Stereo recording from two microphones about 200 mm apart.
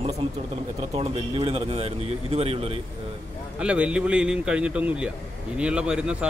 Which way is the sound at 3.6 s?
5° right (ahead or behind).